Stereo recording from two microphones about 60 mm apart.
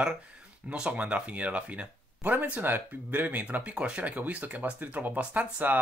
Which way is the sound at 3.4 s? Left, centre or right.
Centre.